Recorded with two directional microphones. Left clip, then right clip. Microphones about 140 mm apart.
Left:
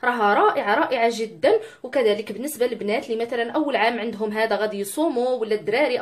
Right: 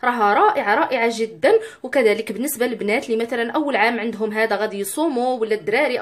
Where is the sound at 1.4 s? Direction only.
35° right (ahead or behind).